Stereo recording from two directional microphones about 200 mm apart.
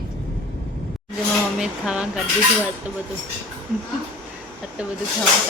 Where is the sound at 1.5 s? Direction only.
5° right (ahead or behind).